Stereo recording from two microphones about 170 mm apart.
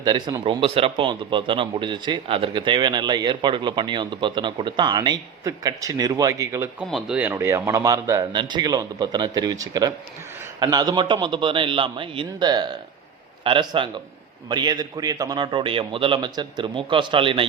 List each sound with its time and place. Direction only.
0.0 s speech: 25° right (ahead or behind)
6.7 s speech: 5° right (ahead or behind); by 17.5 s 30° right (ahead or behind)